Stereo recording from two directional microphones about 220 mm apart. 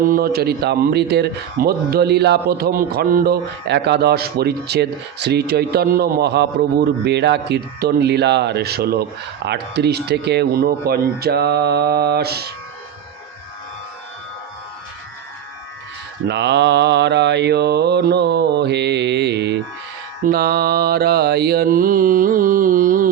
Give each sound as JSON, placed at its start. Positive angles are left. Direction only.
{"t": 0.0, "sound": "speech", "side_deg": -40}
{"t": 16.2, "sound": "speech", "side_deg": -50}
{"t": 20.2, "sound": "mantra", "side_deg": -45}